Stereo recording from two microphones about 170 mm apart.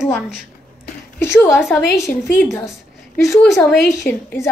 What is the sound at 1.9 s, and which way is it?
Speech, 15° left (ahead or behind).